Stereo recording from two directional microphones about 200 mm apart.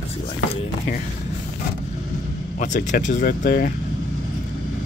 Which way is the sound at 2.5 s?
40° left (ahead or behind).